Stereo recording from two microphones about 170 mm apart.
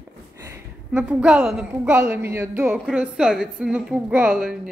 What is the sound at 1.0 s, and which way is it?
A woman's voice, 5° right (ahead or behind).